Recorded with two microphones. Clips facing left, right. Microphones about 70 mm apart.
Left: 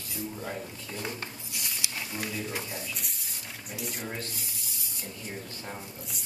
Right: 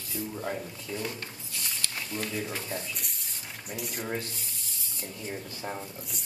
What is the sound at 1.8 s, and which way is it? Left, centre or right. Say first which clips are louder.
Speech: right 1 dB; centre.